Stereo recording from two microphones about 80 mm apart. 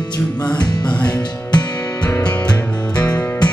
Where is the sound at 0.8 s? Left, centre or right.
Centre.